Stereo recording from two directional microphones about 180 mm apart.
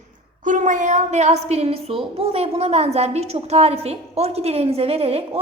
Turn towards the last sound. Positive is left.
turn(degrees=-35)  # may be behind; listen again after turning